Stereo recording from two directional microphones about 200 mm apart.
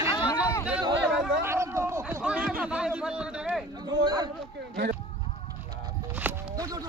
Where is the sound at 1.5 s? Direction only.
15° right (ahead or behind).